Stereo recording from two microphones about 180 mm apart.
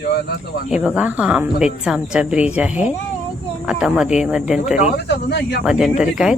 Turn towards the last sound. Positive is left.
turn(degrees=-5)  # may be behind; listen again after turning